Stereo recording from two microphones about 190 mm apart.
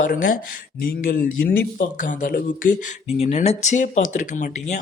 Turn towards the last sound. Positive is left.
turn(degrees=40)  # may be behind; listen again after turning